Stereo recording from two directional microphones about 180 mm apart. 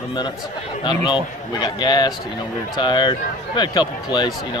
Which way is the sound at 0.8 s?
25° left (ahead or behind).